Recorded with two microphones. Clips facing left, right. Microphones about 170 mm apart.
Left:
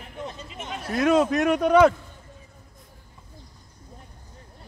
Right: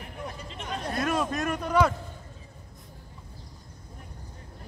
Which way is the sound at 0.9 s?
90° left.